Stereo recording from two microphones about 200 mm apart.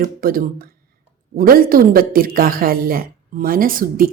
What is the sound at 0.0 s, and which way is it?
Speech, 45° right (ahead or behind).